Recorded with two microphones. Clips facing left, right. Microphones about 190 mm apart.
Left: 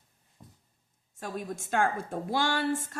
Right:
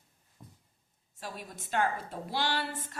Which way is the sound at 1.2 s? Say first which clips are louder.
Left 7 dB; 45° left (ahead or behind).